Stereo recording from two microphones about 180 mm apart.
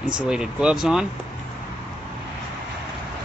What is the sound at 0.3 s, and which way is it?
Speech, 5° right (ahead or behind).